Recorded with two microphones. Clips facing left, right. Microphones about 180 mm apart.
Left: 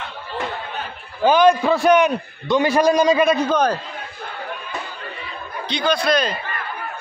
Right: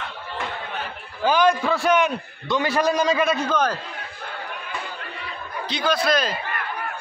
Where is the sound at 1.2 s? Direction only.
20° left (ahead or behind).